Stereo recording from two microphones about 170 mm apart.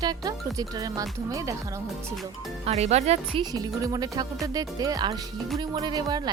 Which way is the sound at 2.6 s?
40° right (ahead or behind).